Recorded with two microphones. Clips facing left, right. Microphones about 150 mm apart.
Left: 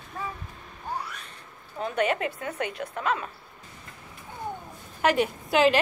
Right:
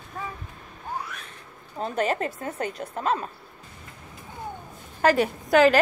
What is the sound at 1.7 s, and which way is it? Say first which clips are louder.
A woman's voice: right 1 dB; 35° right (ahead or behind).